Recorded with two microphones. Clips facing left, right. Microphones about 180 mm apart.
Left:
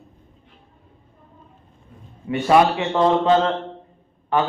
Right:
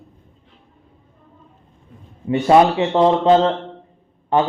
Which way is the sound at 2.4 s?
25° right (ahead or behind).